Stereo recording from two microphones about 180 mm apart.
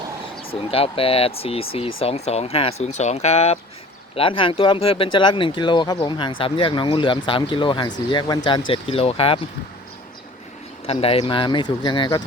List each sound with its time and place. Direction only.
0.7 s speech: 30° left (ahead or behind)
10.8 s speech: 35° left (ahead or behind)